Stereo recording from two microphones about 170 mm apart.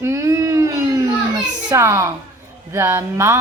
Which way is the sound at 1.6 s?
20° right (ahead or behind).